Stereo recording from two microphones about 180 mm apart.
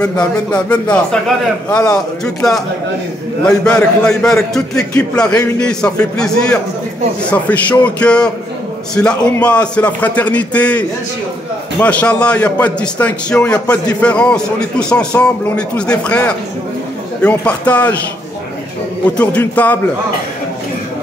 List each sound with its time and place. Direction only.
0.0 s a man's voice: 5° left (ahead or behind)
19.1 s a man's voice: 10° left (ahead or behind)